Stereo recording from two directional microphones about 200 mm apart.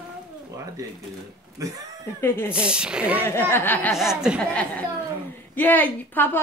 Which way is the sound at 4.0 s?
5° right (ahead or behind).